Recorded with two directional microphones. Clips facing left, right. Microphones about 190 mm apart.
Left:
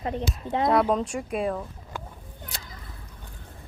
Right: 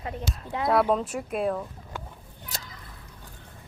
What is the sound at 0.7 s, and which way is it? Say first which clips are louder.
Speech: right 2 dB; 5° right (ahead or behind).